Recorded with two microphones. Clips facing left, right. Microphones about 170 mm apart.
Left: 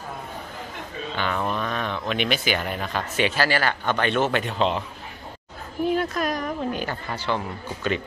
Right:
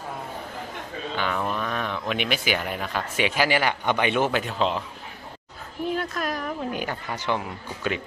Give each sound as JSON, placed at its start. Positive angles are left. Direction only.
{"t": 1.1, "sound": "speech", "side_deg": -5}
{"t": 5.9, "sound": "speech", "side_deg": 0}